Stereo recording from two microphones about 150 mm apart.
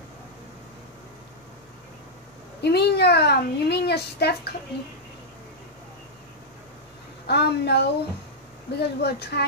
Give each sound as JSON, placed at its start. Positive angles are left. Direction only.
{"t": 2.6, "sound": "a child's voice", "side_deg": 90}
{"t": 7.2, "sound": "a child's voice", "side_deg": 90}